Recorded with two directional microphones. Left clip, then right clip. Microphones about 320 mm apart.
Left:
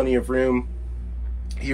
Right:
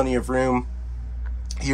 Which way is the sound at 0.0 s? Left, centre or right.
Centre.